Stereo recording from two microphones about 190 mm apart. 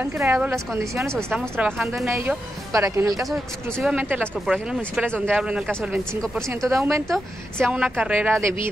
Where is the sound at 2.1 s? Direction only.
15° right (ahead or behind).